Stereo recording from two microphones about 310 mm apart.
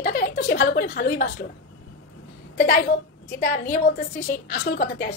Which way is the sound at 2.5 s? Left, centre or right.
Left.